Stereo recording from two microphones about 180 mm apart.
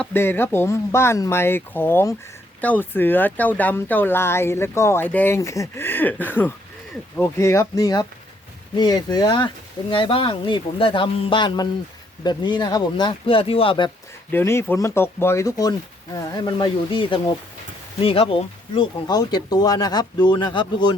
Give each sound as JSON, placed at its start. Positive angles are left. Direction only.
{"t": 0.0, "sound": "speech", "side_deg": 10}
{"t": 14.3, "sound": "speech", "side_deg": 15}